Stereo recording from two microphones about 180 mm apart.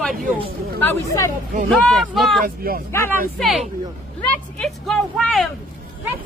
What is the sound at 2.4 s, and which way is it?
Speech, 55° right (ahead or behind).